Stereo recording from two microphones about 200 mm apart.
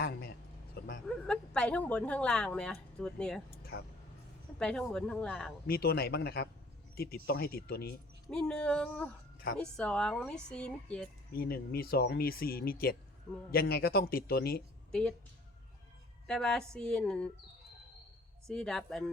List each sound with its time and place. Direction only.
0.0 s a sound: 50° left (ahead or behind)
1.0 s speech: 5° left (ahead or behind)
4.5 s speech: 5° left (ahead or behind)
5.6 s speech: 50° left (ahead or behind)
8.3 s speech: 5° left (ahead or behind)
11.3 s speech: 50° left (ahead or behind)
16.2 s speech: 5° left (ahead or behind)
18.4 s speech: 5° left (ahead or behind)